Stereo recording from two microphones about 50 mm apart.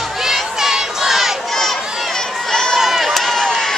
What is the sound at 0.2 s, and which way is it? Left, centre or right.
Crowd, centre.